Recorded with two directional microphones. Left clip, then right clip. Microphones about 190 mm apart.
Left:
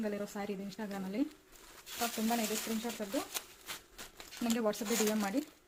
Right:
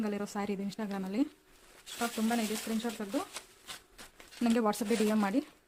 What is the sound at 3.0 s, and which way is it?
Speech, 40° right (ahead or behind).